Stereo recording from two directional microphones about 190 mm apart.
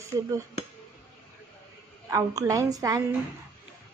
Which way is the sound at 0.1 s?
20° right (ahead or behind).